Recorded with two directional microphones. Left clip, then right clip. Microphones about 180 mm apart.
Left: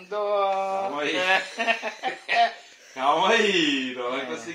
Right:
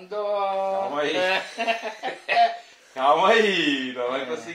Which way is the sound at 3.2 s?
15° right (ahead or behind).